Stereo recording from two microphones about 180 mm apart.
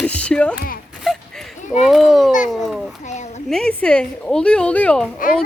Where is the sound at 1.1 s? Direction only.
Centre (ahead or behind).